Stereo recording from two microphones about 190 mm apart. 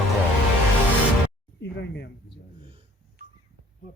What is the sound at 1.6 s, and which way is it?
Speech, 65° left (ahead or behind).